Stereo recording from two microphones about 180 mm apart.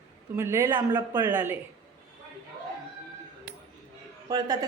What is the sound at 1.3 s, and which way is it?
Speech, 10° right (ahead or behind).